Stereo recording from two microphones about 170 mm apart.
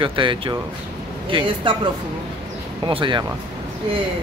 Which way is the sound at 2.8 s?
30° right (ahead or behind).